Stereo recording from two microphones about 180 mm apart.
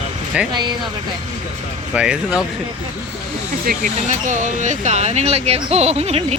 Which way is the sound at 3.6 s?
50° right (ahead or behind).